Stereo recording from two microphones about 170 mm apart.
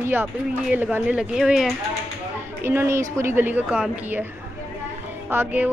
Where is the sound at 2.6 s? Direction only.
15° right (ahead or behind).